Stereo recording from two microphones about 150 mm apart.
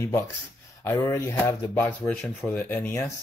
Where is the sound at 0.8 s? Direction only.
20° left (ahead or behind).